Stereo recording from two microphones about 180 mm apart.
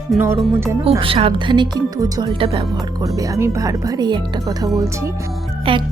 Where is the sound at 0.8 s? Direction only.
30° right (ahead or behind).